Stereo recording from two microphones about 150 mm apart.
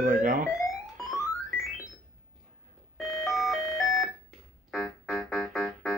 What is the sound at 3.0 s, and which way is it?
Alarm clock, centre (ahead or behind).